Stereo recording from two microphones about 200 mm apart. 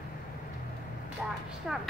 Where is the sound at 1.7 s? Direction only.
5° right (ahead or behind).